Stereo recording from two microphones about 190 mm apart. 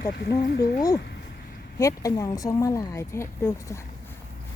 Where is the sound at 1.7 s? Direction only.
15° left (ahead or behind).